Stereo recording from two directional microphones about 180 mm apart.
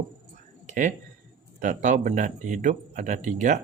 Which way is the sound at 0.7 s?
45° right (ahead or behind).